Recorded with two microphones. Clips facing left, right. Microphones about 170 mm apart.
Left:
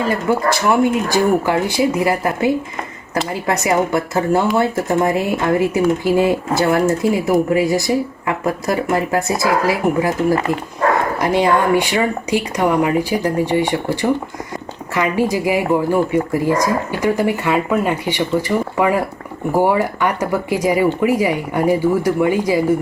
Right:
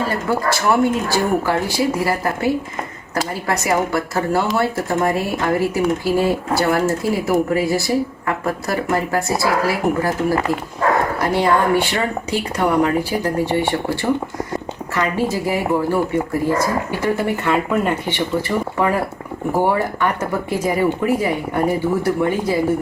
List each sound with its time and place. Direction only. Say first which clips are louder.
0.1 s speech: left 3 dB; 15° left (ahead or behind)